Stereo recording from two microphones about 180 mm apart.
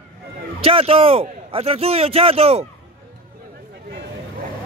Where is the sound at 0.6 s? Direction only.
30° right (ahead or behind).